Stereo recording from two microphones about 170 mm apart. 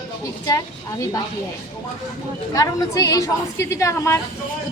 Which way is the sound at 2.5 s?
20° left (ahead or behind).